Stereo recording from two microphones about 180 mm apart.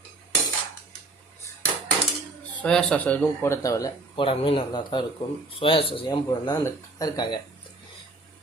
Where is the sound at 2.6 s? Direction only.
5° left (ahead or behind); by 7.4 s 25° left (ahead or behind).